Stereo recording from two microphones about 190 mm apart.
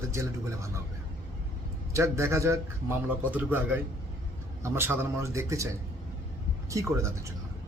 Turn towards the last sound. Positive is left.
turn(degrees=-15)  # may be behind; listen again after turning